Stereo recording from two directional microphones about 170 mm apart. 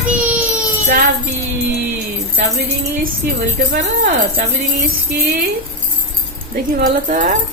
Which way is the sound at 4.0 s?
60° right (ahead or behind).